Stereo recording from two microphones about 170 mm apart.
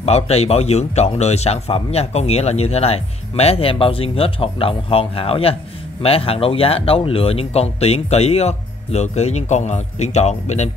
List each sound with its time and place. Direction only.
0.0 s speech: 40° left (ahead or behind)